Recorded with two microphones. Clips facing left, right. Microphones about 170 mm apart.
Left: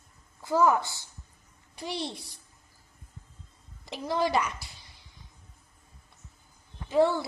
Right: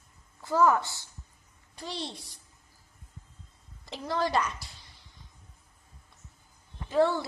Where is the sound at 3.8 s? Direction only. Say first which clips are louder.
Left 2 dB; 15° left (ahead or behind).